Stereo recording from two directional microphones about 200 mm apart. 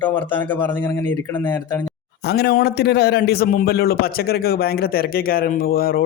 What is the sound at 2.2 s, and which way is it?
A man's voice, 55° left (ahead or behind).